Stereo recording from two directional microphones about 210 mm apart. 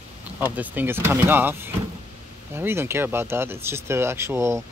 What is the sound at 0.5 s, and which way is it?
Speech, 10° right (ahead or behind).